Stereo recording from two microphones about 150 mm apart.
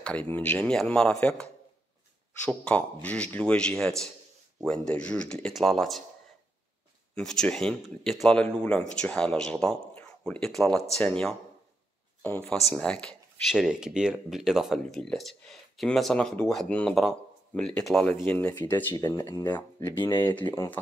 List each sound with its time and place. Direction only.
0.0 s a man's voice: 10° left (ahead or behind)
7.2 s speech: 5° left (ahead or behind)
12.4 s a man's voice: 5° left (ahead or behind)
18.5 s a man's voice: 30° left (ahead or behind)